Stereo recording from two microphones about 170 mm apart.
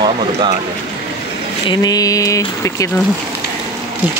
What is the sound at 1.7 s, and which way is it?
Speech, 25° left (ahead or behind).